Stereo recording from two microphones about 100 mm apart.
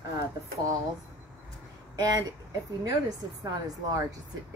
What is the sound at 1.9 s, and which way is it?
Speech, 35° right (ahead or behind).